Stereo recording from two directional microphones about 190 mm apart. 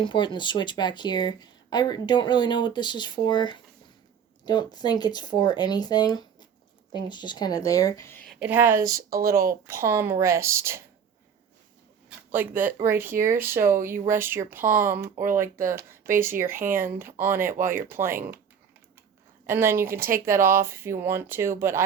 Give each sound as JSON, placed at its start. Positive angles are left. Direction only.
{"t": 0.0, "sound": "speech", "side_deg": 25}
{"t": 8.3, "sound": "speech", "side_deg": -5}
{"t": 9.0, "sound": "speech", "side_deg": -50}
{"t": 9.5, "sound": "speech", "side_deg": -15}
{"t": 12.0, "sound": "speech", "side_deg": -10}
{"t": 16.1, "sound": "speech", "side_deg": -15}
{"t": 16.6, "sound": "speech", "side_deg": -45}
{"t": 17.0, "sound": "speech", "side_deg": -10}
{"t": 19.5, "sound": "speech", "side_deg": -15}
{"t": 20.0, "sound": "speech", "side_deg": -45}
{"t": 20.2, "sound": "speech", "side_deg": -15}